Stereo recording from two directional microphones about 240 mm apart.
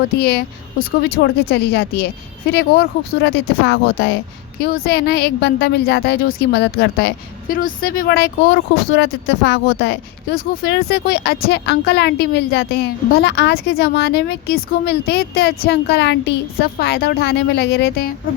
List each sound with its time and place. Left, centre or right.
0.2 s a woman's voice: left